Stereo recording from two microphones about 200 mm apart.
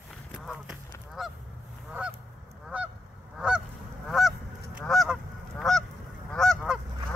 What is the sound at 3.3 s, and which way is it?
Goose, 5° right (ahead or behind).